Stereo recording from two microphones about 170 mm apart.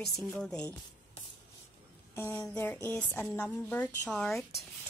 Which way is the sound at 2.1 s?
15° left (ahead or behind).